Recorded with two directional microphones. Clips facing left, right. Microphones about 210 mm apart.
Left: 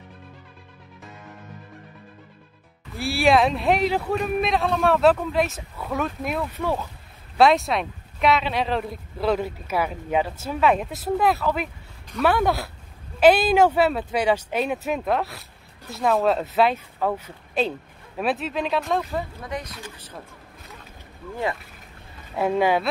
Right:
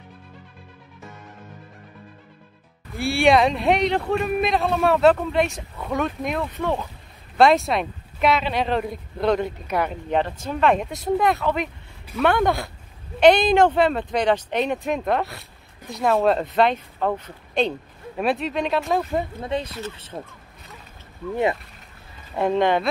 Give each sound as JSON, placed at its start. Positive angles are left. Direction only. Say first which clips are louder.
{"t": 3.0, "sound": "speech", "louder": "right 2 dB", "side_deg": 0}
{"t": 19.1, "sound": "speech", "louder": "right 5 dB", "side_deg": -25}
{"t": 22.3, "sound": "speech", "louder": "right 1 dB", "side_deg": 5}